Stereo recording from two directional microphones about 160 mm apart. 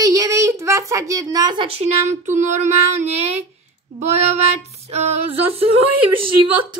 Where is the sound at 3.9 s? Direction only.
40° right (ahead or behind).